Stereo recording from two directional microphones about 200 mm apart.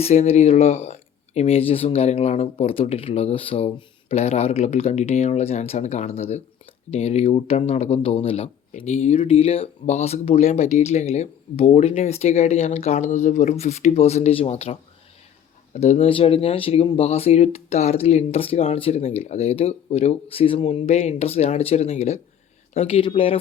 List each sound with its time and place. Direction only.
0.0 s speech: 30° left (ahead or behind)